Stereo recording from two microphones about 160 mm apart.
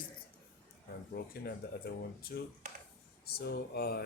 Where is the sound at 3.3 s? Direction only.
85° left.